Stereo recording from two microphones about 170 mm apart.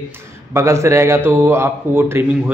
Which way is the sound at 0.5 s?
15° right (ahead or behind).